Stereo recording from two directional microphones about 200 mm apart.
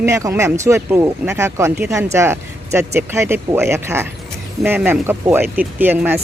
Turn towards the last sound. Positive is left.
turn(degrees=-10)  # may be behind; listen again after turning